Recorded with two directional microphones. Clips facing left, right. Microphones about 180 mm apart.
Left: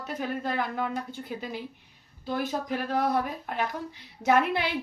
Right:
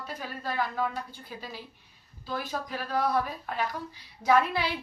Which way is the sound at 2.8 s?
50° left (ahead or behind).